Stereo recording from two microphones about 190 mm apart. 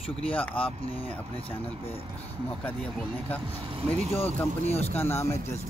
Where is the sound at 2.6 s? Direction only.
5° left (ahead or behind).